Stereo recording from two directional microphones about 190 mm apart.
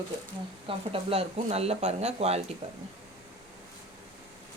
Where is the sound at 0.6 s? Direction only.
30° right (ahead or behind).